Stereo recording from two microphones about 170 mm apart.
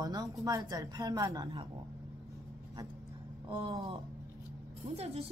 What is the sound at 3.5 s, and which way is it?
A woman's voice, 25° right (ahead or behind).